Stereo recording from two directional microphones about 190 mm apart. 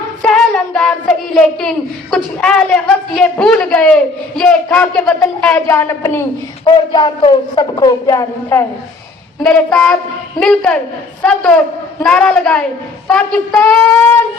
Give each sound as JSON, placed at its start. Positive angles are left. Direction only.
{"t": 0.2, "sound": "child singing", "side_deg": 5}
{"t": 6.7, "sound": "speech", "side_deg": 25}
{"t": 9.4, "sound": "child singing", "side_deg": 5}
{"t": 11.2, "sound": "a man's voice", "side_deg": 5}
{"t": 12.0, "sound": "child singing", "side_deg": 5}